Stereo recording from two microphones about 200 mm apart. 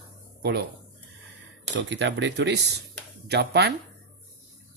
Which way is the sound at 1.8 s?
65° right (ahead or behind).